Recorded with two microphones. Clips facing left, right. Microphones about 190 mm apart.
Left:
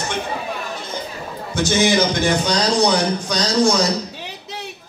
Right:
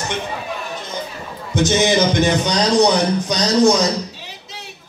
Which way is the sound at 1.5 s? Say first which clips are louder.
Right 1 dB; 20° right (ahead or behind).